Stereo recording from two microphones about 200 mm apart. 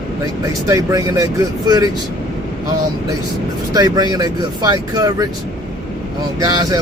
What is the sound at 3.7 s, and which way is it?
Speech, 20° right (ahead or behind).